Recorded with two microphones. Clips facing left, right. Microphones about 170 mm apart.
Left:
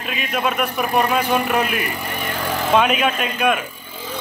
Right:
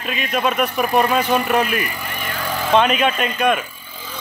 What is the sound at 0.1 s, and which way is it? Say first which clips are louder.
Speech: right 2 dB; 5° left (ahead or behind).